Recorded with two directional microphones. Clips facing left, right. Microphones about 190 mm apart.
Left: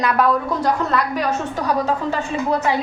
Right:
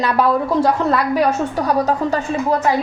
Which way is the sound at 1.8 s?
40° right (ahead or behind).